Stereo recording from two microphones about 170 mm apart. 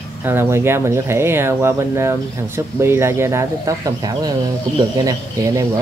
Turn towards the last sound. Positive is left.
turn(degrees=-20)  # may be behind; listen again after turning